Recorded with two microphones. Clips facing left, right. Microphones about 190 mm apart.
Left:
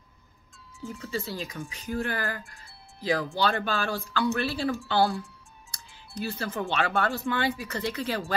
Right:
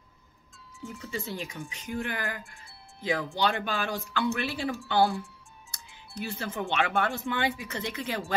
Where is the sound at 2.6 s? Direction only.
20° right (ahead or behind).